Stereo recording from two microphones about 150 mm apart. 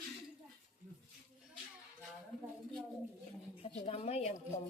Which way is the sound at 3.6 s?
40° left (ahead or behind).